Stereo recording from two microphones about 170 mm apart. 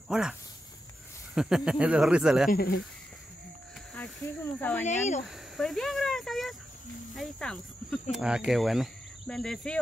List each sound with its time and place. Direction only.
0.1 s speech: 5° right (ahead or behind)
2.5 s speech: 65° left (ahead or behind)
4.6 s speech: 10° left (ahead or behind)
4.8 s speech: 45° left (ahead or behind)
5.6 s speech: centre (ahead or behind)